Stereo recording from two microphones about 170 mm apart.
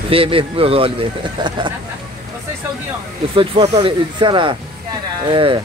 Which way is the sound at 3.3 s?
35° right (ahead or behind).